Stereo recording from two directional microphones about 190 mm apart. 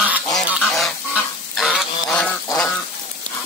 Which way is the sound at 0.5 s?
Centre (ahead or behind).